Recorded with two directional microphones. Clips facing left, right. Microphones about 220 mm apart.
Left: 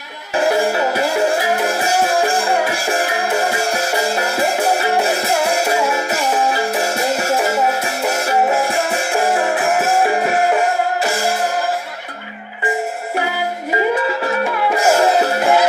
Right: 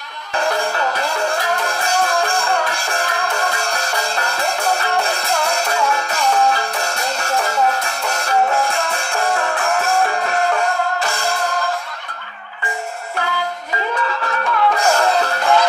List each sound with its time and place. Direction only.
0.4 s music: 5° left (ahead or behind)
9.4 s music: 20° left (ahead or behind)
9.8 s music: 5° left (ahead or behind)
13.2 s music: 10° left (ahead or behind)